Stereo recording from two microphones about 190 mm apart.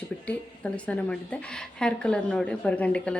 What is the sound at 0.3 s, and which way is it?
A woman's voice, 5° left (ahead or behind).